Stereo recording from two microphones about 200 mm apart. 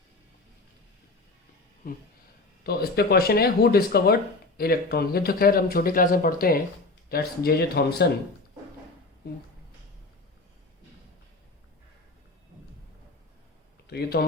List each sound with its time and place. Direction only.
2.6 s speech: 50° left (ahead or behind)
13.8 s speech: 50° left (ahead or behind)